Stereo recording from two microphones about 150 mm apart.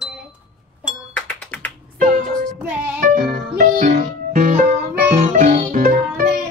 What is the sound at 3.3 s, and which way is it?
Music, 65° right (ahead or behind).